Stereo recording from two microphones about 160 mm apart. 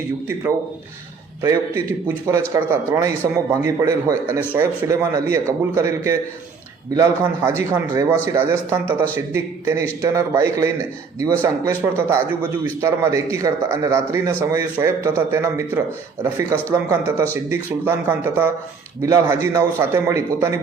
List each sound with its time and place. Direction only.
1.4 s a man's voice: 20° right (ahead or behind)